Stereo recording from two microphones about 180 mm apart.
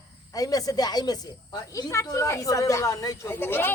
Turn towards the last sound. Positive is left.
turn(degrees=10)  # may be behind; listen again after turning